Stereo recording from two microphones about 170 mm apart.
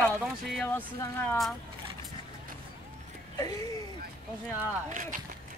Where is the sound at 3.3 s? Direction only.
20° left (ahead or behind).